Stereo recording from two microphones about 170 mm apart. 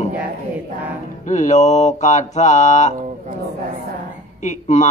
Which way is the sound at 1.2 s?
45° left (ahead or behind).